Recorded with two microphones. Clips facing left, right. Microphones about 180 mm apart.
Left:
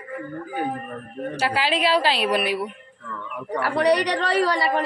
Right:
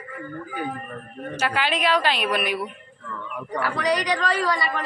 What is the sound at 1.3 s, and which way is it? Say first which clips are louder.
A woman's voice: left 1 dB; 30° left (ahead or behind).